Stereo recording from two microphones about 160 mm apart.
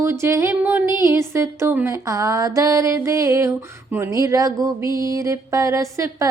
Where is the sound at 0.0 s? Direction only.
15° right (ahead or behind).